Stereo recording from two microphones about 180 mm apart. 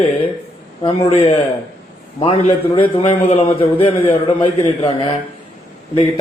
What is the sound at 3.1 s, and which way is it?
A man's voice, 35° left (ahead or behind).